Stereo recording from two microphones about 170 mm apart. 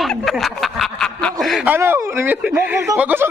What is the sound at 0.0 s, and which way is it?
Snicker, centre (ahead or behind).